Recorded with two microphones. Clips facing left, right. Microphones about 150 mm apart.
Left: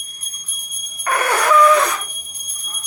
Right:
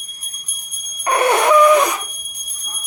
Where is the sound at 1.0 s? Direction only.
25° right (ahead or behind).